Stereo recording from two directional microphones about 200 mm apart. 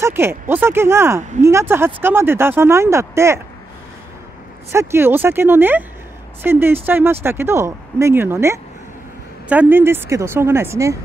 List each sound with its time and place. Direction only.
0.0 s speech: 10° right (ahead or behind)
4.7 s speech: 10° right (ahead or behind)